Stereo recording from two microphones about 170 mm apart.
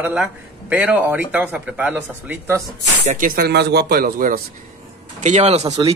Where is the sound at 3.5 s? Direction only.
75° right (ahead or behind).